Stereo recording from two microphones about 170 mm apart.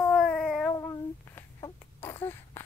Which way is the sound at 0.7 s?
20° left (ahead or behind).